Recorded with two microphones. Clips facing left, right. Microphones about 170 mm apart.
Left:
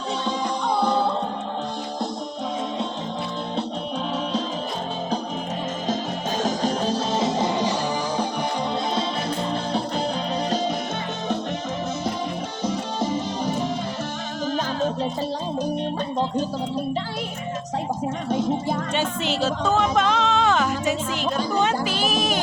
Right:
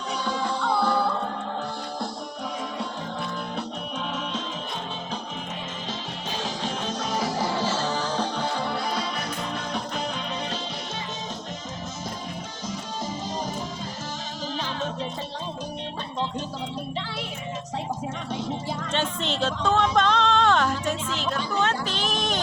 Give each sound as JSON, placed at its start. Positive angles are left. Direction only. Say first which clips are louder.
{"t": 0.3, "sound": "music", "louder": "left 1 dB", "side_deg": 20}
{"t": 6.4, "sound": "music", "louder": "left 8 dB", "side_deg": 40}
{"t": 9.5, "sound": "music", "louder": "left 6 dB", "side_deg": 30}
{"t": 12.6, "sound": "music", "louder": "left 8 dB", "side_deg": 65}
{"t": 16.1, "sound": "music", "louder": "left 5 dB", "side_deg": 40}
{"t": 18.3, "sound": "music", "louder": "left 8 dB", "side_deg": 45}
{"t": 18.9, "sound": "speech", "louder": "right 1 dB", "side_deg": 5}
{"t": 20.0, "sound": "music", "louder": "left 1 dB", "side_deg": 5}
{"t": 21.6, "sound": "a sound", "louder": "left 3 dB", "side_deg": 10}